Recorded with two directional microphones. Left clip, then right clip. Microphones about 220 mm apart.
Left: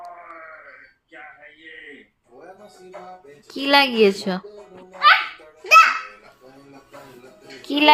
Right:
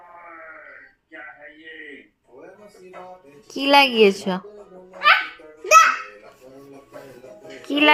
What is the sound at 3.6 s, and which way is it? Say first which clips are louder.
Speech: right 2 dB; centre (ahead or behind).